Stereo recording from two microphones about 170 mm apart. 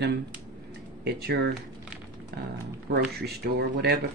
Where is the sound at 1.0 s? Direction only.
75° right (ahead or behind).